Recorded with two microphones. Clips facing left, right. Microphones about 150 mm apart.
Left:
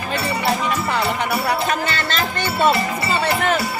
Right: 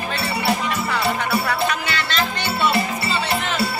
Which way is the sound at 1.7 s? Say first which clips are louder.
Left 3 dB; 45° left (ahead or behind).